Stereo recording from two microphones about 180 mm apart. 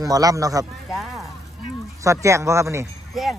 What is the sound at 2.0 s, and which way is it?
Speech, 15° right (ahead or behind).